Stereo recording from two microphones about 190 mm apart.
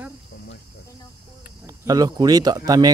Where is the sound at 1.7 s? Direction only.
20° right (ahead or behind).